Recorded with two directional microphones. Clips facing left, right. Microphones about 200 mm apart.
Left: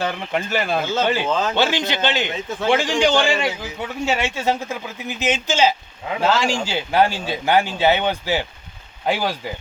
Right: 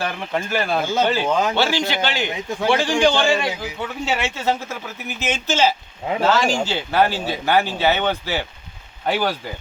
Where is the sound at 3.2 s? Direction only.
15° left (ahead or behind).